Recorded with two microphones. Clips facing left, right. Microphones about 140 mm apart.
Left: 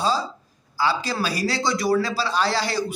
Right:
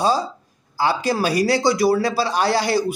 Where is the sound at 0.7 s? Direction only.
50° right (ahead or behind).